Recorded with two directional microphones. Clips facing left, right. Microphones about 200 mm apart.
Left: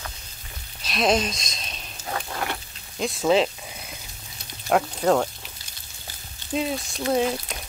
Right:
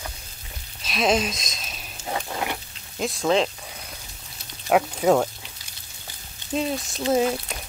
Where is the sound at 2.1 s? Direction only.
10° right (ahead or behind).